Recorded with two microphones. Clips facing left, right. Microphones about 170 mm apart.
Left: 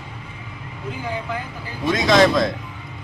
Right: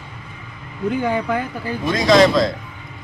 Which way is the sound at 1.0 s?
65° right (ahead or behind).